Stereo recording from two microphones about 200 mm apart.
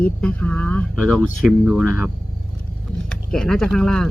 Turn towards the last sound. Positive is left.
turn(degrees=5)  # may be behind; listen again after turning